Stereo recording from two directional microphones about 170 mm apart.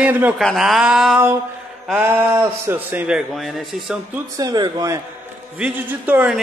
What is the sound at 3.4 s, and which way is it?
Music, centre (ahead or behind).